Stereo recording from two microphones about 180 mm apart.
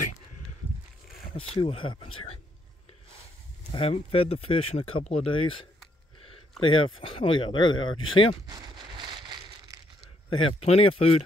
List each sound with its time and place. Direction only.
1.5 s speech: 30° left (ahead or behind)
3.7 s speech: 30° left (ahead or behind)
8.5 s a sound: 20° right (ahead or behind)
10.3 s speech: 30° left (ahead or behind)